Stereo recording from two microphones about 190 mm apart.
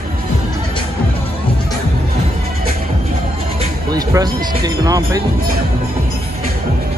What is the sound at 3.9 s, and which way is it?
Speech, 20° right (ahead or behind).